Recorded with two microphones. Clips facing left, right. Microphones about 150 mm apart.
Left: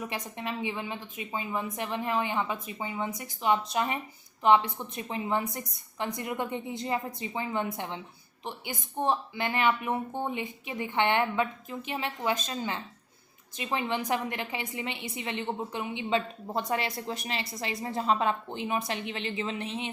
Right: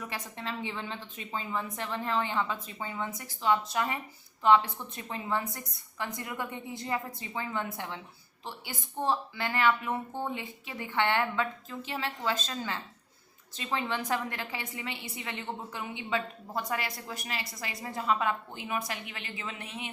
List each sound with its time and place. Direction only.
0.0 s a woman's voice: 20° left (ahead or behind)